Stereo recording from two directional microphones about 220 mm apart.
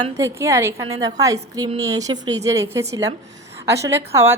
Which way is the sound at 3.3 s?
15° right (ahead or behind).